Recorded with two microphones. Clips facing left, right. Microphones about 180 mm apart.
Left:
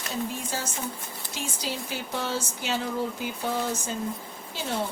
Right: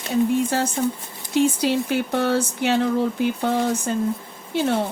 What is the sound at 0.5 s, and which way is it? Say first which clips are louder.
Speech: right 11 dB; 65° right (ahead or behind).